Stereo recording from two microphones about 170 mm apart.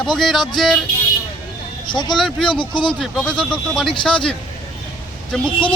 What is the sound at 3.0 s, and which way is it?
Speech, 5° left (ahead or behind).